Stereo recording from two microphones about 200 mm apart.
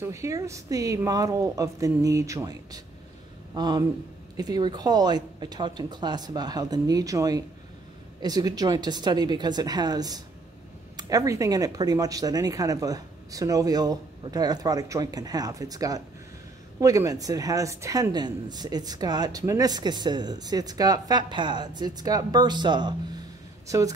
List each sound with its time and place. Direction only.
0.0 s speech: 15° right (ahead or behind)